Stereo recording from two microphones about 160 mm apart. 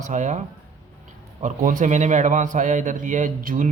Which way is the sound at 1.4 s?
55° right (ahead or behind).